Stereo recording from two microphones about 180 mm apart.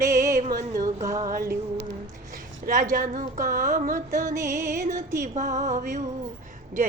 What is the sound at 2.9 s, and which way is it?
Speech, 50° right (ahead or behind).